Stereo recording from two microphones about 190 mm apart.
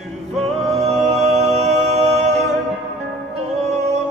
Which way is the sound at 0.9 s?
35° right (ahead or behind).